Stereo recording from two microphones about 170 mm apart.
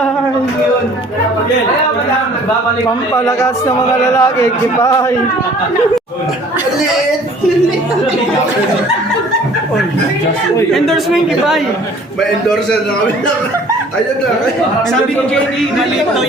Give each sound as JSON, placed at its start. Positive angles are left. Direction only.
{"t": 3.1, "sound": "a man's voice", "side_deg": 15}
{"t": 10.8, "sound": "speech", "side_deg": 0}